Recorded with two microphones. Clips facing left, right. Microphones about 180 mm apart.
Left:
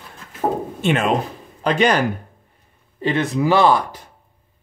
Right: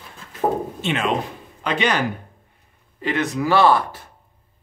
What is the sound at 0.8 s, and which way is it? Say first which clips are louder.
Speech: left 6 dB; 50° left (ahead or behind).